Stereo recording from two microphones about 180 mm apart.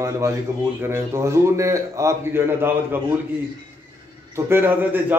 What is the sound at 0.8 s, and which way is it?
A man's voice, 15° right (ahead or behind).